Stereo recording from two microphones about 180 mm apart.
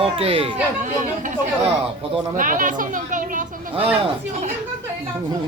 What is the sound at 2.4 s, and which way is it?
Speech, 50° right (ahead or behind).